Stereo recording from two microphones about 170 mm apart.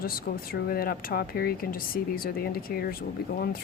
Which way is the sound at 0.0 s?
60° left (ahead or behind).